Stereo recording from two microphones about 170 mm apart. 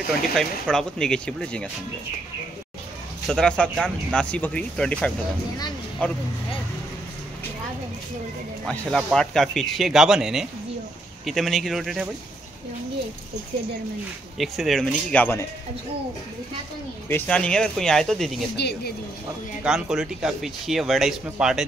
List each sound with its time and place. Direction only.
0.3 s speech: 5° left (ahead or behind)
3.3 s speech: 5° left (ahead or behind)
8.6 s speech: 5° left (ahead or behind)
14.4 s speech: centre (ahead or behind)
17.1 s speech: 5° left (ahead or behind)
18.6 s speech: 75° left (ahead or behind)
19.6 s speech: 5° right (ahead or behind)